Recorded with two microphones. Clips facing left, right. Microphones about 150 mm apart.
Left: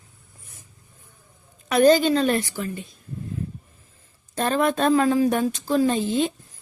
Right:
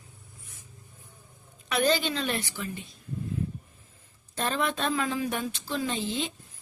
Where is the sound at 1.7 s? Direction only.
45° left (ahead or behind).